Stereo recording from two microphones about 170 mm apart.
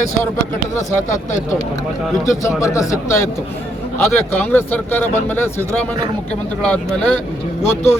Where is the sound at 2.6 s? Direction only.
20° left (ahead or behind).